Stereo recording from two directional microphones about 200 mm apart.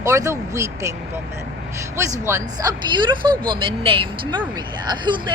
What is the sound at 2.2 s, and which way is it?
A woman's voice, 15° right (ahead or behind).